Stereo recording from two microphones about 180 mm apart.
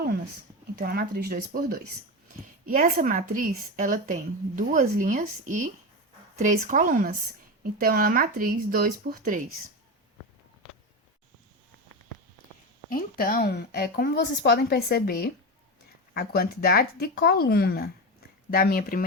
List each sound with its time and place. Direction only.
0.8 s a woman's voice: 60° right (ahead or behind)
12.9 s a woman's voice: 55° left (ahead or behind)